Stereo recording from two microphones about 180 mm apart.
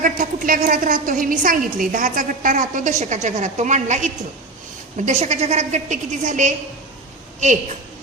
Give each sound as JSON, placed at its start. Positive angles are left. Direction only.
{"t": 0.0, "sound": "a woman's voice", "side_deg": -50}